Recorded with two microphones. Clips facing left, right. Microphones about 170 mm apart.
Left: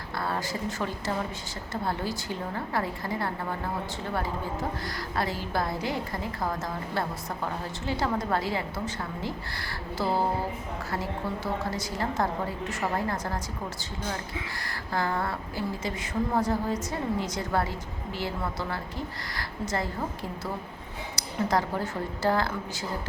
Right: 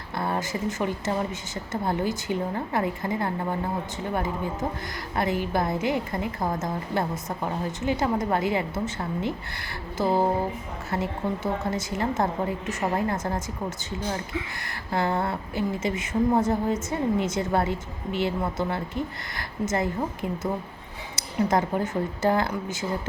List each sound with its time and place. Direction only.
0.2 s a woman's voice: 20° right (ahead or behind)
5.1 s a woman's voice: 20° right (ahead or behind)
11.6 s a woman's voice: 20° right (ahead or behind)
14.6 s a woman's voice: 20° right (ahead or behind)